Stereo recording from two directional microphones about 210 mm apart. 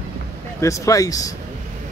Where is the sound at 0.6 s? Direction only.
15° left (ahead or behind).